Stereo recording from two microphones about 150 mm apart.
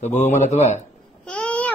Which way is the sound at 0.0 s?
50° left (ahead or behind).